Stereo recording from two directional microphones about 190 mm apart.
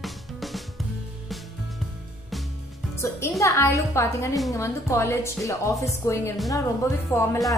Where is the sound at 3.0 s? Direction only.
15° left (ahead or behind).